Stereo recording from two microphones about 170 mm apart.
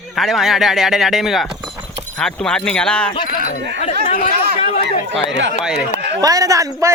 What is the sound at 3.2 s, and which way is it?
Speech, 60° left (ahead or behind).